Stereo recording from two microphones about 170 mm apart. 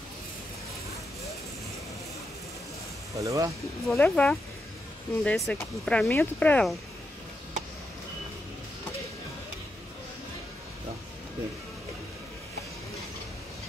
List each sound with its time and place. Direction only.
3.2 s speech: 20° right (ahead or behind)
3.8 s speech: 5° left (ahead or behind)